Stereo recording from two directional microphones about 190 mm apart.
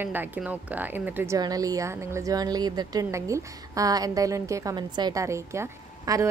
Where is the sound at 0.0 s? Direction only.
10° right (ahead or behind).